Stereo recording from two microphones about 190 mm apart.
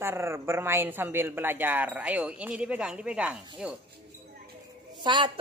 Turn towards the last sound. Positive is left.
turn(degrees=-25)  # may be behind; listen again after turning